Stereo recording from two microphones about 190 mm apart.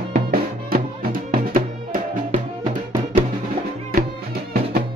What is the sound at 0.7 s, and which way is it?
Music, 50° right (ahead or behind).